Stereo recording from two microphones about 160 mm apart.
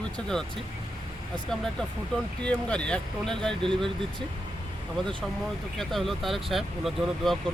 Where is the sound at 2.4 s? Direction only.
5° left (ahead or behind).